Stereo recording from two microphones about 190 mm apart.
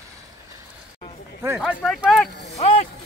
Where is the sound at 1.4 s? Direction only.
15° right (ahead or behind).